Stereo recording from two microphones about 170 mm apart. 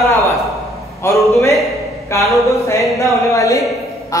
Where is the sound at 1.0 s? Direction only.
15° left (ahead or behind).